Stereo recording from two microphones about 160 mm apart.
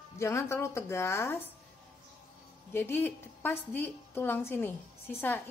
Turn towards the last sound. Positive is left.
turn(degrees=10)  # may be behind; listen again after turning